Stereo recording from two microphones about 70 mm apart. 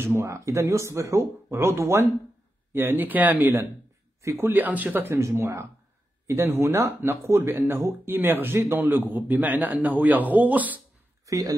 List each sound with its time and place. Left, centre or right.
0.0 s a man's voice: right
4.2 s speech: right
4.5 s a man's voice: right
5.0 s a man's voice: right
11.2 s speech: right